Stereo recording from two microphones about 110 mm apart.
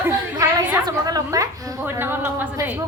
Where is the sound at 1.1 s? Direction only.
30° right (ahead or behind).